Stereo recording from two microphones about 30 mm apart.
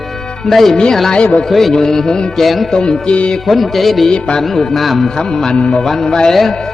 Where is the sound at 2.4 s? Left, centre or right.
Centre.